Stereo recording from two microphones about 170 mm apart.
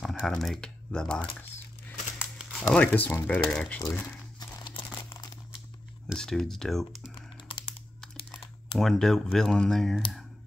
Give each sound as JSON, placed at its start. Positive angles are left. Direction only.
{"t": 0.0, "sound": "speech", "side_deg": 0}
{"t": 2.1, "sound": "crumpling", "side_deg": 0}
{"t": 2.7, "sound": "speech", "side_deg": 10}
{"t": 4.4, "sound": "crumpling", "side_deg": 25}
{"t": 6.0, "sound": "speech", "side_deg": 5}
{"t": 7.2, "sound": "typing", "side_deg": 30}
{"t": 8.7, "sound": "speech", "side_deg": 0}